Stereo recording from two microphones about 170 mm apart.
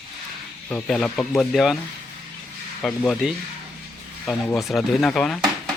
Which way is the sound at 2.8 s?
5° left (ahead or behind).